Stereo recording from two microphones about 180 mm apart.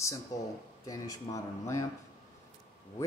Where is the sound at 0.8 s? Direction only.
20° left (ahead or behind).